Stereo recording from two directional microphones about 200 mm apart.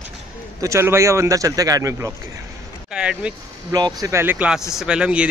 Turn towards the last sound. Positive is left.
turn(degrees=-5)  # may be behind; listen again after turning